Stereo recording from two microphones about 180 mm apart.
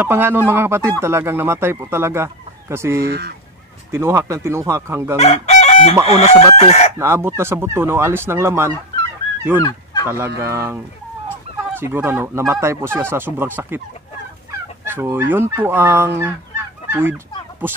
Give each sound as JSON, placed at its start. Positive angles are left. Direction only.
{"t": 0.0, "sound": "speech", "side_deg": -10}
{"t": 3.0, "sound": "speech", "side_deg": -60}
{"t": 3.9, "sound": "speech", "side_deg": -15}
{"t": 5.1, "sound": "chicken", "side_deg": 35}
{"t": 6.0, "sound": "speech", "side_deg": 35}
{"t": 7.0, "sound": "speech", "side_deg": -15}
{"t": 9.6, "sound": "fowl", "side_deg": 25}
{"t": 10.0, "sound": "speech", "side_deg": -15}
{"t": 14.9, "sound": "speech", "side_deg": -10}